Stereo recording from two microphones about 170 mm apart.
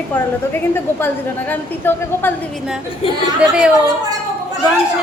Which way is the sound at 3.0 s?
35° left (ahead or behind).